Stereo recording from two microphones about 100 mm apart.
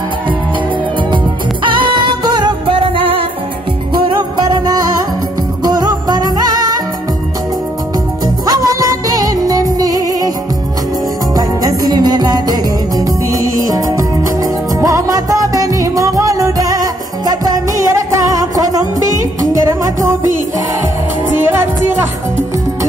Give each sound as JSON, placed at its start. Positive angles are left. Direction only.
{"t": 1.1, "sound": "music", "side_deg": -55}
{"t": 8.5, "sound": "music", "side_deg": -35}
{"t": 11.3, "sound": "music", "side_deg": -40}